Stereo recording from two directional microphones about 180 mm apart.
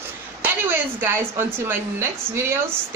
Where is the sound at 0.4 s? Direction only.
10° right (ahead or behind).